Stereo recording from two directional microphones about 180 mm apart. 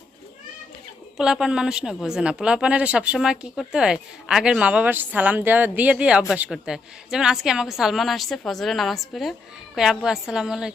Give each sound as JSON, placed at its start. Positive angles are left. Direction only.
{"t": 1.1, "sound": "a woman's voice", "side_deg": -5}